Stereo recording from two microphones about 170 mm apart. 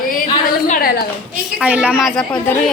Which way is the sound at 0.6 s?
45° left (ahead or behind).